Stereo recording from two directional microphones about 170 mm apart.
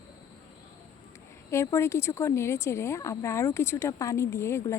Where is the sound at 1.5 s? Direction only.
15° left (ahead or behind).